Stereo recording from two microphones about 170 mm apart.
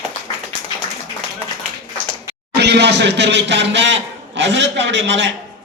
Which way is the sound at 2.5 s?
80° right.